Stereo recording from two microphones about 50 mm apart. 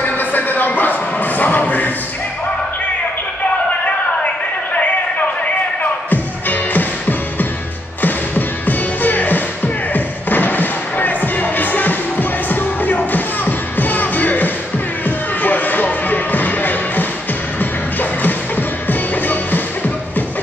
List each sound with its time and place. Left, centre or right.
0.0 s music: left
4.7 s music: left